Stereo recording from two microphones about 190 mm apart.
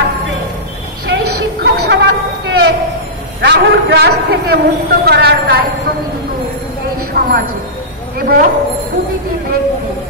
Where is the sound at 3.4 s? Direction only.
60° right (ahead or behind).